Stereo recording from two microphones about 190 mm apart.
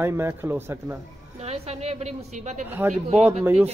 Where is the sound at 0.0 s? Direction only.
10° right (ahead or behind).